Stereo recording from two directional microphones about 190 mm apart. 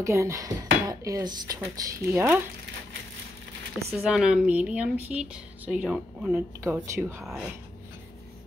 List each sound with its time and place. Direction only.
0.0 s speech: 15° right (ahead or behind)
3.9 s speech: 5° right (ahead or behind)